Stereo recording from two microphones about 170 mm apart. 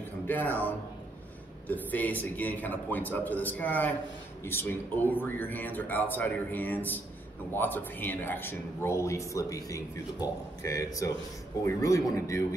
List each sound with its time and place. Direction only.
0.3 s a man's voice: 10° left (ahead or behind)